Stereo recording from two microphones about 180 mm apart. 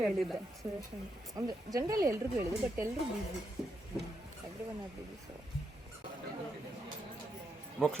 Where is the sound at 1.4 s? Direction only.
20° right (ahead or behind).